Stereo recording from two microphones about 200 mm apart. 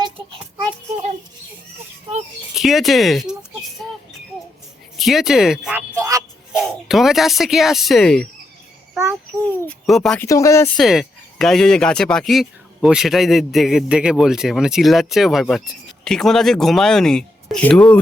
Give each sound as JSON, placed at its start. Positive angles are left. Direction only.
{"t": 0.0, "sound": "child singing", "side_deg": -25}
{"t": 2.6, "sound": "speech", "side_deg": 0}
{"t": 3.8, "sound": "bird", "side_deg": 5}
{"t": 4.9, "sound": "a sound", "side_deg": 0}
{"t": 6.5, "sound": "speech", "side_deg": 0}
{"t": 9.6, "sound": "speech", "side_deg": 0}
{"t": 10.2, "sound": "speech", "side_deg": 15}
{"t": 10.8, "sound": "speech", "side_deg": 0}